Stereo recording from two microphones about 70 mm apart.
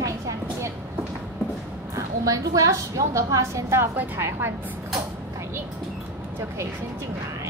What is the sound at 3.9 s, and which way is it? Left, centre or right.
Speech, right.